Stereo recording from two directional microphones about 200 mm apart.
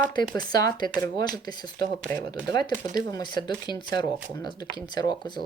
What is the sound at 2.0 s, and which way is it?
Speech, 10° left (ahead or behind).